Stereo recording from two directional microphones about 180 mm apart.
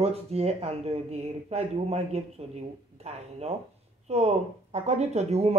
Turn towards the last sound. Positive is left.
turn(degrees=-35)  # may be behind; listen again after turning